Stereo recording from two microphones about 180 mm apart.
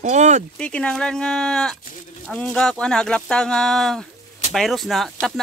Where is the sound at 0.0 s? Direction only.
40° right (ahead or behind).